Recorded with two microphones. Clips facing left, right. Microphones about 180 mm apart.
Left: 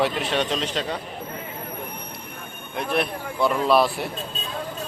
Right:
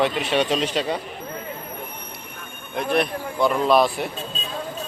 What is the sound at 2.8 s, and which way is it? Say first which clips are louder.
A man's voice: right 3 dB; 5° left (ahead or behind).